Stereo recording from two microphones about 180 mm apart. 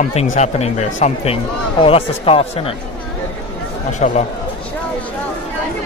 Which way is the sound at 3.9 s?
40° left (ahead or behind).